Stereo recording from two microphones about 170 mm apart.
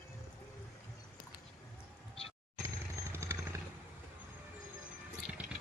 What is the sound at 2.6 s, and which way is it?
Motorcycle, 15° right (ahead or behind).